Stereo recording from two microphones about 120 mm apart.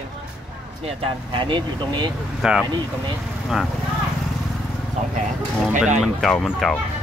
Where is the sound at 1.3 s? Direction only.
45° right (ahead or behind).